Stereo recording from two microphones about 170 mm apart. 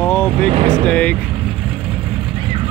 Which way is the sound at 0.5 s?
35° right (ahead or behind).